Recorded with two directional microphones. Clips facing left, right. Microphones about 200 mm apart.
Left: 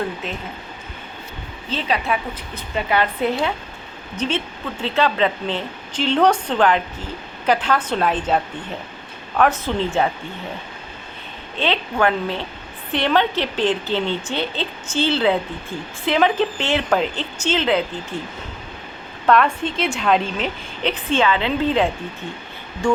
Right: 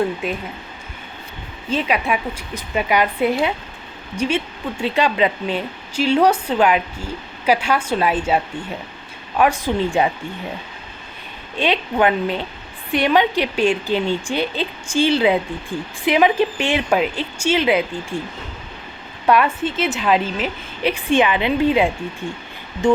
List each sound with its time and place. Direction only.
1.7 s a woman's voice: 10° right (ahead or behind)
9.4 s a woman's voice: 15° right (ahead or behind)
11.6 s a woman's voice: 15° right (ahead or behind)
19.2 s a woman's voice: 10° right (ahead or behind)